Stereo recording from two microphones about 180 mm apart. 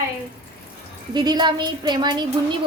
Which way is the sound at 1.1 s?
25° right (ahead or behind).